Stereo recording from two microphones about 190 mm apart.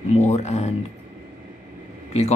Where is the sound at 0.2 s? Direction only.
35° left (ahead or behind).